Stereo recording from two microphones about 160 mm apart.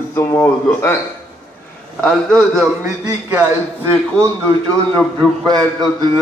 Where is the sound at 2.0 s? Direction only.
5° left (ahead or behind).